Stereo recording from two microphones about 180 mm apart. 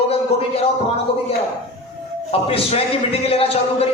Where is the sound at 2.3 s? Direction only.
30° left (ahead or behind).